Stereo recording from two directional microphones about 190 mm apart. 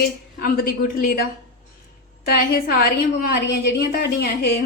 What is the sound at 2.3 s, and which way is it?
A woman's voice, 55° left (ahead or behind).